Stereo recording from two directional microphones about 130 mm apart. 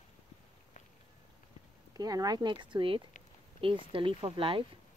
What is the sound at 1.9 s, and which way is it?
Speech, 30° right (ahead or behind).